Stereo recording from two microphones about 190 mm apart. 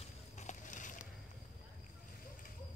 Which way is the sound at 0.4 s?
40° left (ahead or behind).